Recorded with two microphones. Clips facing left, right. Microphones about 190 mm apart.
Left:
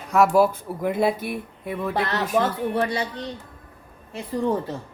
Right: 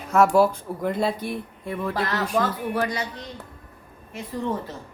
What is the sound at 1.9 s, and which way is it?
Speech, 25° left (ahead or behind).